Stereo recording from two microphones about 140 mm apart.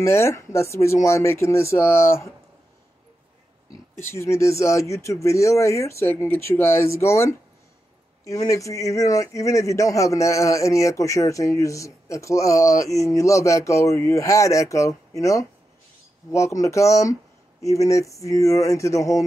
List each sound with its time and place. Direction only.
0.0 s speech: 20° left (ahead or behind)
4.0 s speech: 20° left (ahead or behind)